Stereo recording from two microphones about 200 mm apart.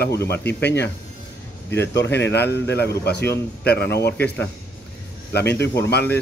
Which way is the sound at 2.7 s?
55° left (ahead or behind).